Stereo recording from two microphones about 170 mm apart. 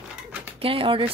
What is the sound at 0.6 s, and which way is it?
Speech, 30° right (ahead or behind).